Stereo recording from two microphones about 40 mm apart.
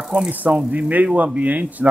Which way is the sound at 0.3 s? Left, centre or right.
Right.